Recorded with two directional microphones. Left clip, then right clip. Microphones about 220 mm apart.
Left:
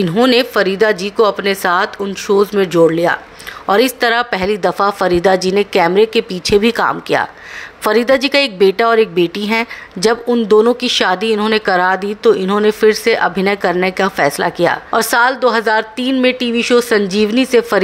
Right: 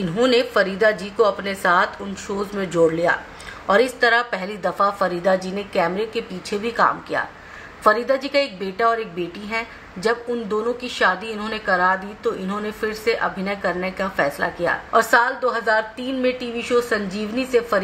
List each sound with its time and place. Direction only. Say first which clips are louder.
0.0 s a woman's voice: left 6 dB; 35° left (ahead or behind)